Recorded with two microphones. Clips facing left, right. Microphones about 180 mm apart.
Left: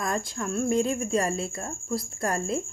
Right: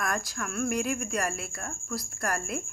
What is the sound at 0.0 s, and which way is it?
Speech, 25° left (ahead or behind).